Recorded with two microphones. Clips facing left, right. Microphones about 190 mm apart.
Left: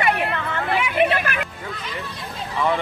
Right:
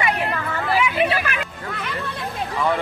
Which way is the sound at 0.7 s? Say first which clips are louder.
Even; 55° left (ahead or behind).